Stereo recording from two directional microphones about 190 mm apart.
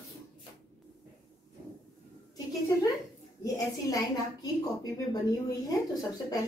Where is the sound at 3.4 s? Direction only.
20° left (ahead or behind).